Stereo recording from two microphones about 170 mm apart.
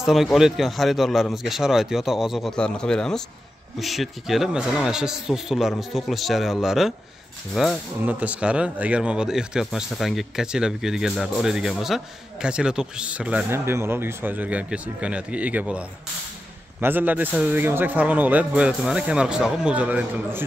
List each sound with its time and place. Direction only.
0.0 s a man's voice: centre (ahead or behind)